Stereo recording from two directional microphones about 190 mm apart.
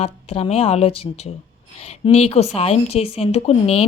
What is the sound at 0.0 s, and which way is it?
A woman's voice, 35° left (ahead or behind).